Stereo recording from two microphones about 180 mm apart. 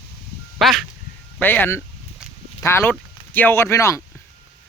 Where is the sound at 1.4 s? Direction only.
10° left (ahead or behind).